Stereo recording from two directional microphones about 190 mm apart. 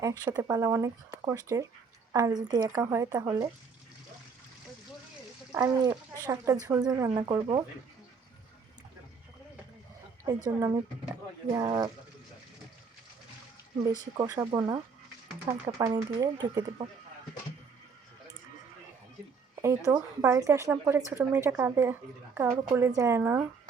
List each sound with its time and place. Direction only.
0.0 s speech: 20° right (ahead or behind)
5.5 s speech: 20° right (ahead or behind)
10.2 s speech: 15° right (ahead or behind)
14.2 s speech: 15° right (ahead or behind)
19.6 s speech: 15° right (ahead or behind)